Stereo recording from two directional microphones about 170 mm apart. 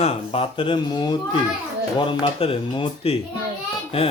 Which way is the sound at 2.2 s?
30° left (ahead or behind).